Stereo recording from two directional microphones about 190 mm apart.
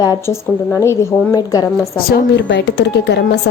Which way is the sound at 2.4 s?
65° left (ahead or behind).